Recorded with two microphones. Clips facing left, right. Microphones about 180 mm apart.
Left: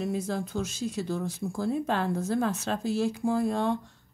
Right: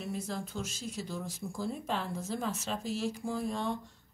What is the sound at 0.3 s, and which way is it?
Speech, 65° left (ahead or behind).